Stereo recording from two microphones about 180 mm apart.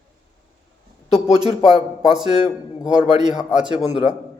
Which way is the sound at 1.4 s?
25° right (ahead or behind).